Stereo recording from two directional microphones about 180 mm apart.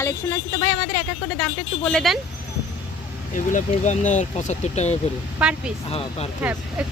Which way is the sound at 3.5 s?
40° left (ahead or behind).